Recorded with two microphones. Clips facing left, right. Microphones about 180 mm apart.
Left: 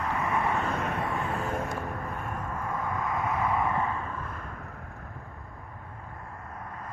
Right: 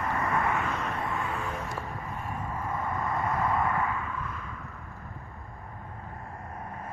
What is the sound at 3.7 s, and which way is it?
Vehicle, 25° left (ahead or behind).